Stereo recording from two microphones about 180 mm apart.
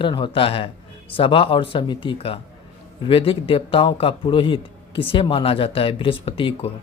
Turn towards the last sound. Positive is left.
turn(degrees=30)  # may be behind; listen again after turning